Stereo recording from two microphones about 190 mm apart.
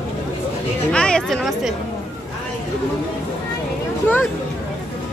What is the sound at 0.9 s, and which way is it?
Speech, 5° left (ahead or behind).